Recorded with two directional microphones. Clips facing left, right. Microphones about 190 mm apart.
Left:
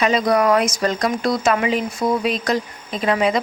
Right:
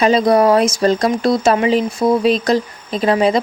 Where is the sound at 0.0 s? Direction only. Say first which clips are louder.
Right 5 dB; 30° right (ahead or behind).